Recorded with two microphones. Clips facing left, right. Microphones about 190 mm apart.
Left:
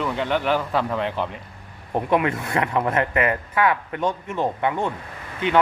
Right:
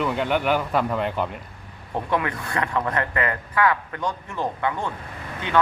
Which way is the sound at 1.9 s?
20° left (ahead or behind).